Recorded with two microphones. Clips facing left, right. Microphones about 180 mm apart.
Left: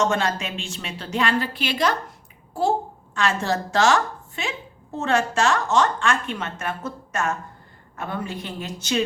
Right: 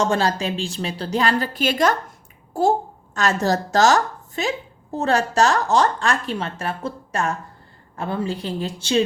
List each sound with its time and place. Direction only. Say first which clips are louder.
0.0 s a child's voice: right 2 dB; 35° right (ahead or behind)